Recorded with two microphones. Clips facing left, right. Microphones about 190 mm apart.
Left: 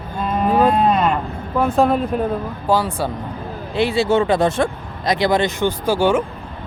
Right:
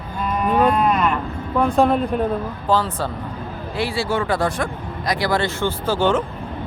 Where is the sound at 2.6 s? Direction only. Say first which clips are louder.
Left 2 dB; 10° left (ahead or behind).